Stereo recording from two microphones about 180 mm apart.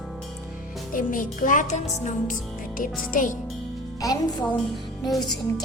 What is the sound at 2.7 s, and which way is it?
Music, 50° left (ahead or behind).